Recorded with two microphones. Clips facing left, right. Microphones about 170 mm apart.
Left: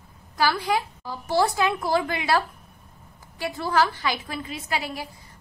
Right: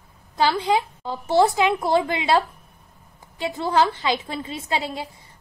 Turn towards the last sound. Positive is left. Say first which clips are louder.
# right 3 dB
turn(degrees=-25)  # may be behind; listen again after turning